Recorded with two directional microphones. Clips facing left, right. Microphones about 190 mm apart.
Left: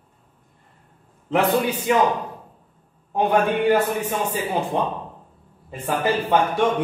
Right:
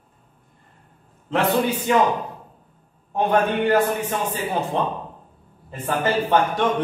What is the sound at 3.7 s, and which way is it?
A man's voice, 10° left (ahead or behind).